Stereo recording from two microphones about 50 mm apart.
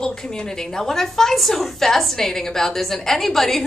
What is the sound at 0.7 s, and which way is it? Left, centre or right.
A woman's voice, centre.